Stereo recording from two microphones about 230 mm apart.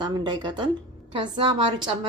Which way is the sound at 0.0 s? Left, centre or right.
Centre.